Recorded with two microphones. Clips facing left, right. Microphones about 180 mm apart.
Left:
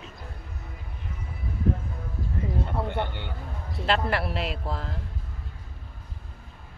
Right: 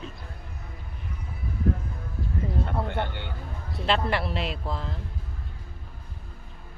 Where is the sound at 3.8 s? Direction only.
5° left (ahead or behind).